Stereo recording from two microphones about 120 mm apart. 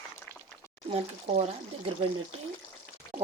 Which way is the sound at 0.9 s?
65° right (ahead or behind).